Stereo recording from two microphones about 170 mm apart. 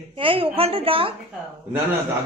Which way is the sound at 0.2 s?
30° right (ahead or behind).